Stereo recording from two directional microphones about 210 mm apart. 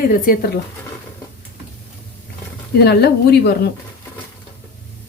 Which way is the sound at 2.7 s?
50° left (ahead or behind).